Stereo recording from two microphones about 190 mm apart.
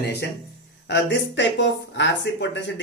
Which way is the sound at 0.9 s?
70° left (ahead or behind).